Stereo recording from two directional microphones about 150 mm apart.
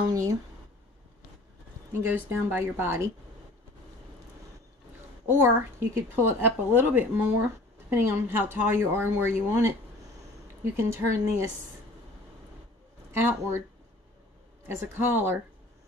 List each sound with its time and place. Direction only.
0.1 s speech: 25° right (ahead or behind)
1.9 s speech: 15° right (ahead or behind)
5.2 s speech: 15° right (ahead or behind)
13.1 s speech: 15° right (ahead or behind)
14.7 s speech: 15° right (ahead or behind)